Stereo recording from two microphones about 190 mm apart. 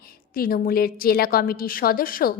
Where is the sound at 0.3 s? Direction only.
50° left (ahead or behind).